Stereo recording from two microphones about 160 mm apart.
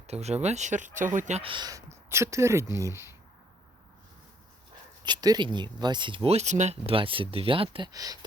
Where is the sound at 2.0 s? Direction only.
15° right (ahead or behind).